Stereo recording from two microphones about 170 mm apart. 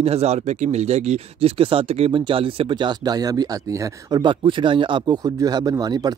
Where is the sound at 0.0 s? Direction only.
40° right (ahead or behind).